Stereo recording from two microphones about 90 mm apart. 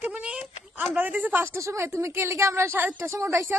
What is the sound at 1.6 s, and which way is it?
A woman's voice, 30° right (ahead or behind).